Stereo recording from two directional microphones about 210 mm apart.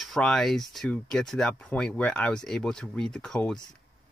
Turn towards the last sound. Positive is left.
turn(degrees=5)  # may be behind; listen again after turning